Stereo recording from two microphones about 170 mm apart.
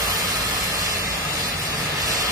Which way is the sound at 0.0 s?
20° right (ahead or behind).